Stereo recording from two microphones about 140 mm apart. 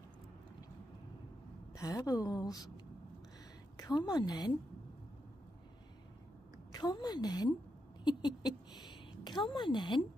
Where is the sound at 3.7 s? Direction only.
25° left (ahead or behind).